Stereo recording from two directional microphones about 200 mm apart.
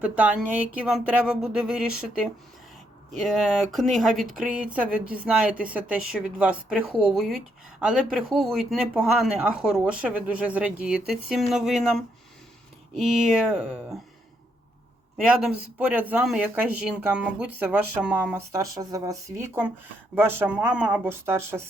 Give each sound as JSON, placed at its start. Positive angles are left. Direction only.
{"t": 0.0, "sound": "speech", "side_deg": -5}
{"t": 15.3, "sound": "speech", "side_deg": -5}
{"t": 20.1, "sound": "speech", "side_deg": -10}